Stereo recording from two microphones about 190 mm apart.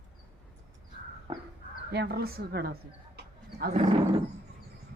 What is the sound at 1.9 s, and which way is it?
Speech, 60° right (ahead or behind).